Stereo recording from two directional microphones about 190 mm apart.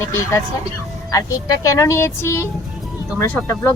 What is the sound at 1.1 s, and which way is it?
A woman's voice, 20° left (ahead or behind).